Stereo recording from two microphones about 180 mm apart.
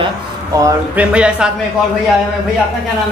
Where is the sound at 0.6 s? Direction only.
20° right (ahead or behind).